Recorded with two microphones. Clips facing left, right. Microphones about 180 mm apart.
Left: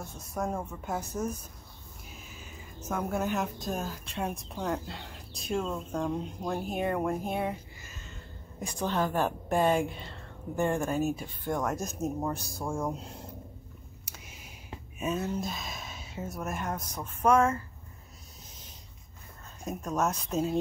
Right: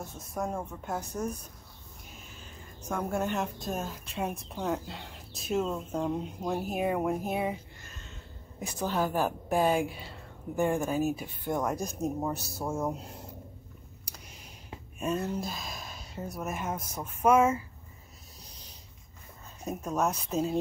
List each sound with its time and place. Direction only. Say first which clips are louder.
0.2 s speech: left 1 dB; centre (ahead or behind)
11.7 s speech: right 1 dB; centre (ahead or behind)
14.0 s a sound: even; 5° left (ahead or behind)
15.0 s speech: even; centre (ahead or behind)
19.6 s speech: even; 5° right (ahead or behind)